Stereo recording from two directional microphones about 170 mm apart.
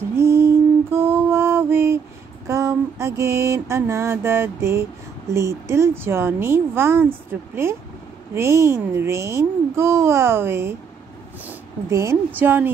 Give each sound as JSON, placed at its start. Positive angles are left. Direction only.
{"t": 0.1, "sound": "mantra", "side_deg": -15}